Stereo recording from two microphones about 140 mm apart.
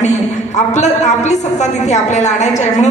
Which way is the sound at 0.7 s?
55° left (ahead or behind).